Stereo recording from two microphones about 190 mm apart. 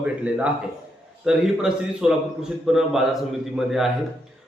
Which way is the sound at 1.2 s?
5° right (ahead or behind).